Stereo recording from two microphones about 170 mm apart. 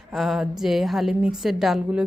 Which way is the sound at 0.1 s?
Centre (ahead or behind).